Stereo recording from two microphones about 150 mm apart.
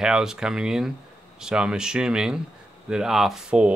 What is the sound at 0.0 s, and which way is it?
Speech, 5° right (ahead or behind).